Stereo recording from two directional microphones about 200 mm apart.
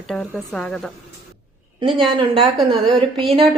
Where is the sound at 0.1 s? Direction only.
Centre (ahead or behind).